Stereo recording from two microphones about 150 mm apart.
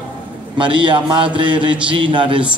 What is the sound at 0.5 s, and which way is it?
Speech, 35° right (ahead or behind).